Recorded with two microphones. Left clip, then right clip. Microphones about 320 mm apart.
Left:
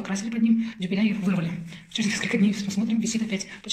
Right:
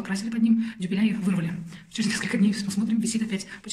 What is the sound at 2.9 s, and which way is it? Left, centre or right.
Speech, centre.